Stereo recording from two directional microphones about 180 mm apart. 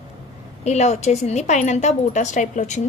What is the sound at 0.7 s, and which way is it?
A woman's voice, 40° left (ahead or behind).